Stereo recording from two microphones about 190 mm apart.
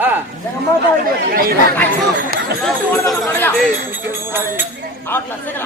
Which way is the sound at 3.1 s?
10° left (ahead or behind).